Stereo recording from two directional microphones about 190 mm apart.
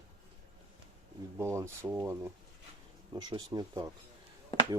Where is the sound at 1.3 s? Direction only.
15° right (ahead or behind).